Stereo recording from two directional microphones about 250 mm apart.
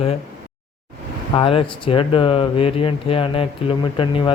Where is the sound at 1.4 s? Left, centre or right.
Left.